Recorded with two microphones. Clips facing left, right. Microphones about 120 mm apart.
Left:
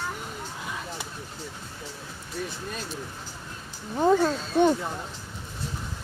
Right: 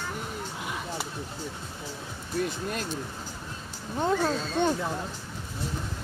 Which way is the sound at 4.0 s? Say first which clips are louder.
Left 4 dB; 5° left (ahead or behind).